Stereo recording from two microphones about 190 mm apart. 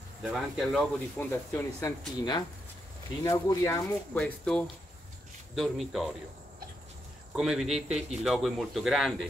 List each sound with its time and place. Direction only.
0.2 s a man's voice: centre (ahead or behind); by 4.2 s 15° left (ahead or behind)
4.2 s a man's voice: 5° left (ahead or behind)
7.3 s a man's voice: 5° right (ahead or behind)